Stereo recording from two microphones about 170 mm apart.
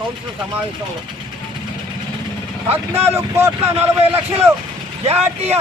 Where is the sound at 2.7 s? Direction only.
15° right (ahead or behind).